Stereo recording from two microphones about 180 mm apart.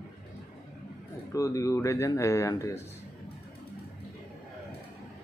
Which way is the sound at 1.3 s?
20° left (ahead or behind).